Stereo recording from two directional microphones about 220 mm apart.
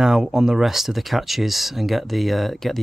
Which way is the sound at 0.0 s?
5° right (ahead or behind).